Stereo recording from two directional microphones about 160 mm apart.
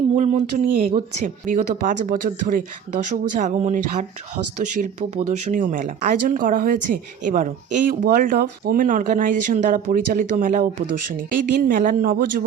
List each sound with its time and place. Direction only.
0.1 s speech: 50° right (ahead or behind)